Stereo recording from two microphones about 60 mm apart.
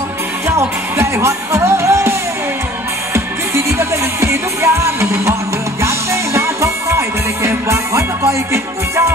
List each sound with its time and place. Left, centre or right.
0.5 s music: right
3.5 s music: right